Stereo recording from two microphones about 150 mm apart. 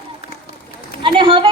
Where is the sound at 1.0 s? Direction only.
35° right (ahead or behind).